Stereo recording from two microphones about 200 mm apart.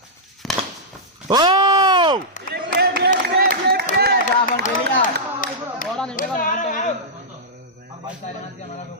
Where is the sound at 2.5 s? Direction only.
55° right (ahead or behind).